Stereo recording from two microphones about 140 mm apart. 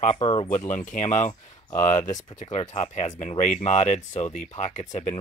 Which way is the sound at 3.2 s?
50° left (ahead or behind).